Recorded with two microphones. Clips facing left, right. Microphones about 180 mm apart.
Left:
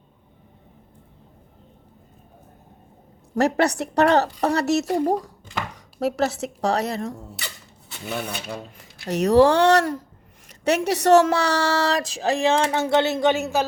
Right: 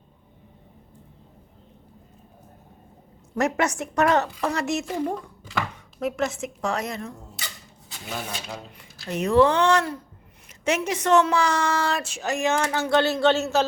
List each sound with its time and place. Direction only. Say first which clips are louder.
3.3 s speech: left 4 dB; 35° left (ahead or behind)
7.3 s a sound: left 2 dB; 65° left (ahead or behind)
8.8 s speech: left 5 dB; 40° left (ahead or behind); by 13.7 s 15° left (ahead or behind)